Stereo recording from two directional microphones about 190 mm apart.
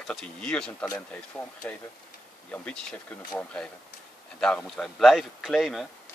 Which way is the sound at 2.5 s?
5° left (ahead or behind).